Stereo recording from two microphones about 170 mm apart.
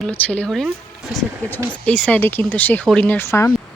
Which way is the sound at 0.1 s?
10° left (ahead or behind).